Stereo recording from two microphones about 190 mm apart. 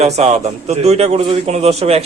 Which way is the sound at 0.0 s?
35° right (ahead or behind).